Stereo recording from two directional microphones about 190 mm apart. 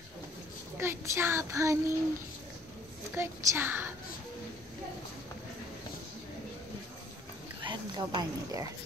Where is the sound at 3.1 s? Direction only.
10° right (ahead or behind).